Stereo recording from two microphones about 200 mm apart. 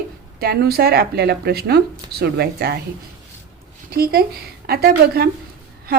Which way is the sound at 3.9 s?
50° right (ahead or behind).